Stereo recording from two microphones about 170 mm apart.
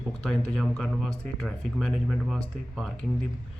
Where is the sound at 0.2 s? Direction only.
5° left (ahead or behind).